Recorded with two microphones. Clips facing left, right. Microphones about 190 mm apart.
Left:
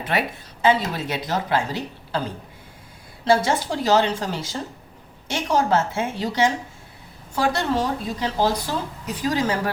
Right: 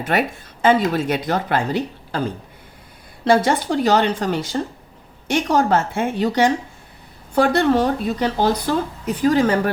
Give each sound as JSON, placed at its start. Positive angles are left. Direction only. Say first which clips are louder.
{"t": 0.0, "sound": "a woman's voice", "louder": "right 4 dB", "side_deg": -45}
{"t": 3.2, "sound": "speech", "louder": "right 3 dB", "side_deg": -55}